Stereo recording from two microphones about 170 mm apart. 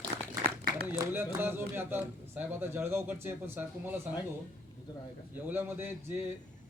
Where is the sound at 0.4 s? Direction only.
65° right (ahead or behind).